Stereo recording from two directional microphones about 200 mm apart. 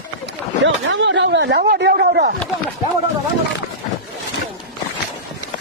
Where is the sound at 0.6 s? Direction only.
65° right (ahead or behind).